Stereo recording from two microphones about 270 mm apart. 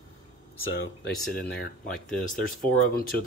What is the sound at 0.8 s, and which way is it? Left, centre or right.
Speech, left.